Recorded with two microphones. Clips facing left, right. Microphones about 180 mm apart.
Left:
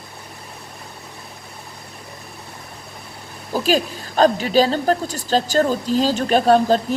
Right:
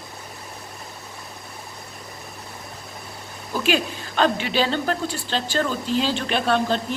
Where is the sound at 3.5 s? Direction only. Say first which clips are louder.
Left 3 dB; 40° left (ahead or behind).